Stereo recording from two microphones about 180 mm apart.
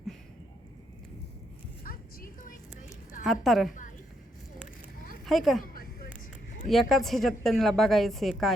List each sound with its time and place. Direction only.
1.9 s music: 50° left (ahead or behind)
3.4 s a woman's voice: centre (ahead or behind)
5.2 s a woman's voice: centre (ahead or behind)
6.7 s a woman's voice: centre (ahead or behind)